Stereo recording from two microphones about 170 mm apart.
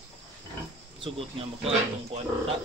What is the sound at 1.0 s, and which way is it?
Speech, 35° right (ahead or behind).